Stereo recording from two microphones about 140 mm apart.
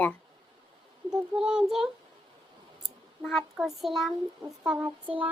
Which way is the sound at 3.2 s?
Centre (ahead or behind).